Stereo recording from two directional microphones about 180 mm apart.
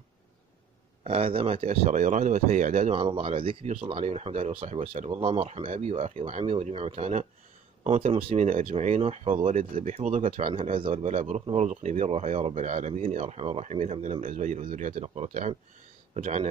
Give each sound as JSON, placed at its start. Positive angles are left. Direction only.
{"t": 1.0, "sound": "speech", "side_deg": -30}
{"t": 2.9, "sound": "speech", "side_deg": -30}
{"t": 8.5, "sound": "speech", "side_deg": -45}
{"t": 9.8, "sound": "speech", "side_deg": -40}